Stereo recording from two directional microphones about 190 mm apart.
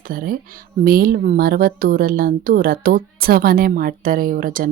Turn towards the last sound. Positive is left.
turn(degrees=-50)  # may be behind; listen again after turning